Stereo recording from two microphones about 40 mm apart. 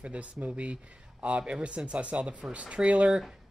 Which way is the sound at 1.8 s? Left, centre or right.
Right.